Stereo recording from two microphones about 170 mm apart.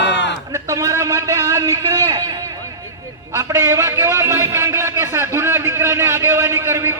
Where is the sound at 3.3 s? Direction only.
15° right (ahead or behind).